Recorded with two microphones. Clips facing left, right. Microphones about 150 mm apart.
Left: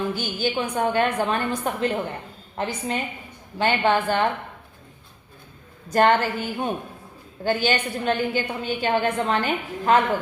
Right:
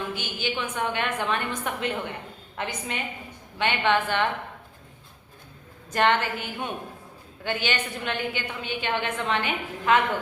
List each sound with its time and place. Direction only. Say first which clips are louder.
0.1 s a woman's voice: left 5 dB; 40° left (ahead or behind)
5.9 s a woman's voice: left 5 dB; 40° left (ahead or behind)